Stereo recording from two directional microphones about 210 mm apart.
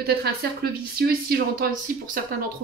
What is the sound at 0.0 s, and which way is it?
Speech, 50° right (ahead or behind).